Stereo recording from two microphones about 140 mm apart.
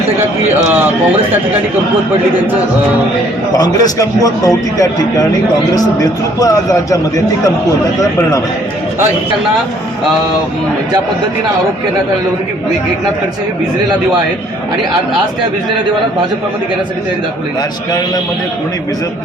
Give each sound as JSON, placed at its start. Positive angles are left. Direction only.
{"t": 3.6, "sound": "a man's voice", "side_deg": 25}